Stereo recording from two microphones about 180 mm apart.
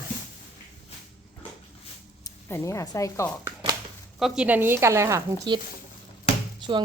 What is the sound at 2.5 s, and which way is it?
Speech, 15° left (ahead or behind).